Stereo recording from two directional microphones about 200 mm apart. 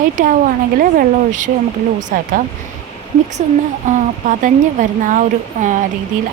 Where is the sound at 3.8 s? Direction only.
40° right (ahead or behind).